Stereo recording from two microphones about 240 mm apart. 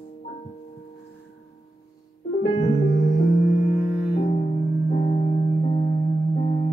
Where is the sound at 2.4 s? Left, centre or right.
Left.